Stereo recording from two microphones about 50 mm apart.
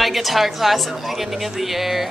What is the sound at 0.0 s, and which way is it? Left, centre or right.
A woman's voice, centre.